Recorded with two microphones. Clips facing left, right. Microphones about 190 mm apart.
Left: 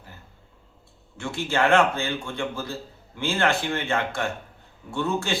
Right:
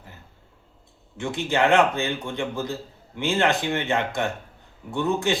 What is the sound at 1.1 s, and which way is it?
A man's voice, 20° right (ahead or behind).